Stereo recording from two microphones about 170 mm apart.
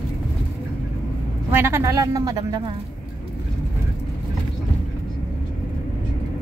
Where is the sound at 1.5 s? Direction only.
15° right (ahead or behind).